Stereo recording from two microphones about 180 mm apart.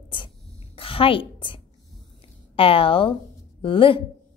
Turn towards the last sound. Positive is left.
turn(degrees=30)  # may be behind; listen again after turning